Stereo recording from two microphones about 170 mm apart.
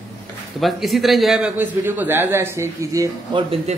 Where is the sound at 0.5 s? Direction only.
Centre (ahead or behind); by 3.4 s 20° right (ahead or behind).